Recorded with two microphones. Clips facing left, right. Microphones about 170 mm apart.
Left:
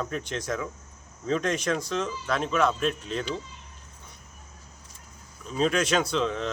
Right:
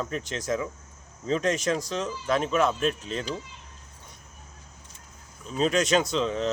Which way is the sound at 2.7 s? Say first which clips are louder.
Even; 35° right (ahead or behind).